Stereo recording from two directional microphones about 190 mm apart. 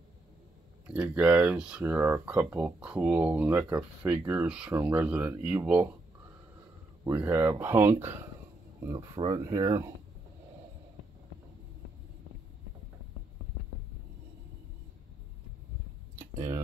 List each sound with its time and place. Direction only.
0.8 s speech: 5° right (ahead or behind)
7.1 s speech: 10° right (ahead or behind)
8.8 s speech: 25° right (ahead or behind)
16.2 s a sound: 15° right (ahead or behind)